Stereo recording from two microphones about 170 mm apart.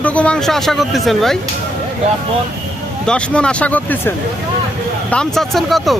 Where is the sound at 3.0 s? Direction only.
5° left (ahead or behind).